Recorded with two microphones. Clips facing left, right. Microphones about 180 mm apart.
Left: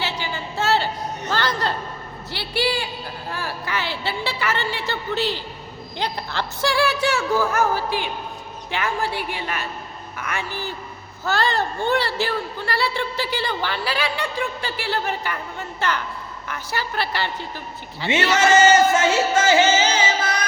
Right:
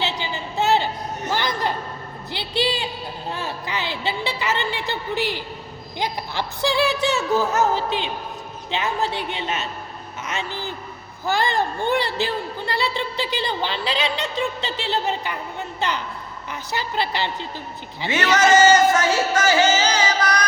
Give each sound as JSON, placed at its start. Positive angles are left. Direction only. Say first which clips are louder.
{"t": 0.0, "sound": "a sound", "louder": "right 1 dB", "side_deg": -20}
{"t": 1.3, "sound": "a man's voice", "louder": "even", "side_deg": -15}
{"t": 18.1, "sound": "music", "louder": "even", "side_deg": 25}